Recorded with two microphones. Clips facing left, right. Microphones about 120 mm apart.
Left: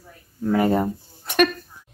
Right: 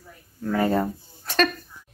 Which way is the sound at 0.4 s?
20° left (ahead or behind).